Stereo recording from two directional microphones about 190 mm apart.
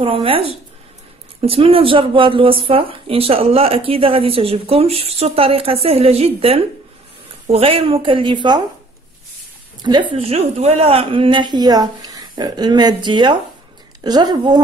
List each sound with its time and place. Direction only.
0.0 s speech: 30° right (ahead or behind)
9.8 s speech: 25° right (ahead or behind)